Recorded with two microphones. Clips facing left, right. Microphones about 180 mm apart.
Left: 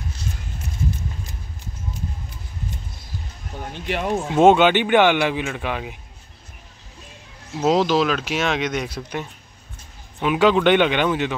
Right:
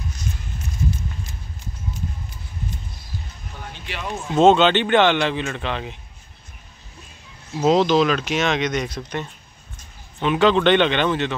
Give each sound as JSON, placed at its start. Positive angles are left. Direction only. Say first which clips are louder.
{"t": 3.7, "sound": "speech", "louder": "left 8 dB", "side_deg": 50}
{"t": 4.4, "sound": "speech", "louder": "even", "side_deg": 15}
{"t": 7.5, "sound": "speech", "louder": "right 1 dB", "side_deg": 0}